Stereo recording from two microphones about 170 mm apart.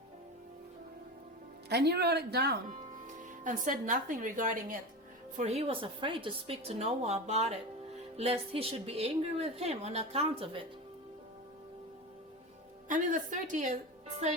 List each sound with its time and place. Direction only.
1.7 s speech: 75° right (ahead or behind)
3.2 s speech: 50° right (ahead or behind)
5.4 s a woman's voice: 35° right (ahead or behind)
12.9 s speech: 50° right (ahead or behind)